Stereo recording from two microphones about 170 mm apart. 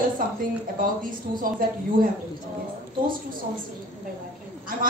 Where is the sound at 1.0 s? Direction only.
55° right (ahead or behind).